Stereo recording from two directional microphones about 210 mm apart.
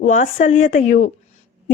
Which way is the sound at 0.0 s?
35° left (ahead or behind).